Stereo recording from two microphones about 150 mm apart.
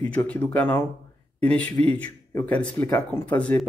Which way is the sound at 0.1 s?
10° left (ahead or behind).